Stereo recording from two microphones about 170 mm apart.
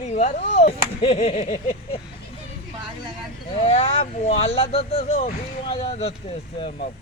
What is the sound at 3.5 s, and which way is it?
Speech, 40° left (ahead or behind).